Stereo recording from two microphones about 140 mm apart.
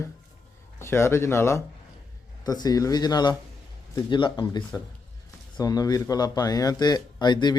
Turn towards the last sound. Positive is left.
turn(degrees=30)  # may be behind; listen again after turning